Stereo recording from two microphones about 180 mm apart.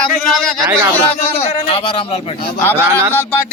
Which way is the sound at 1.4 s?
30° left (ahead or behind).